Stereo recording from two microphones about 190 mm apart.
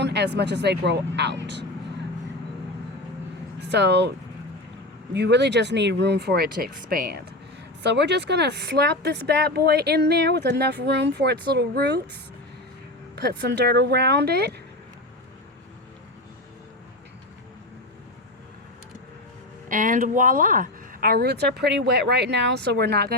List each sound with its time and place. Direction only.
0.0 s speech: 60° right (ahead or behind)
3.7 s speech: 65° right (ahead or behind)
5.1 s speech: 65° right (ahead or behind)
7.8 s speech: 65° right (ahead or behind)
13.1 s speech: 60° right (ahead or behind)
19.6 s speech: 45° right (ahead or behind); by 23.1 s 60° right (ahead or behind)